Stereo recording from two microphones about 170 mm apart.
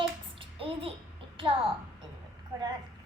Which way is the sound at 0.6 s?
35° right (ahead or behind).